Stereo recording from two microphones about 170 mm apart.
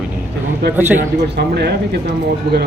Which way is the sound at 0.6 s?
75° right (ahead or behind).